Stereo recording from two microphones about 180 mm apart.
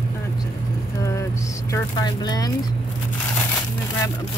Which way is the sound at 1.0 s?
15° left (ahead or behind).